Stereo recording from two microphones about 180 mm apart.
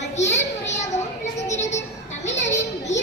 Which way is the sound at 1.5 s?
40° left (ahead or behind).